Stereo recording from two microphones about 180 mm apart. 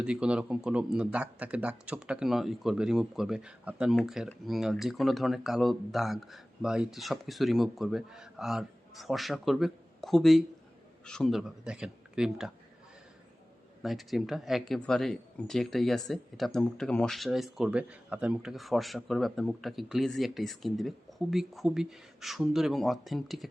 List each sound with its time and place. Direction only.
0.0 s speech: 5° right (ahead or behind)
13.8 s speech: centre (ahead or behind)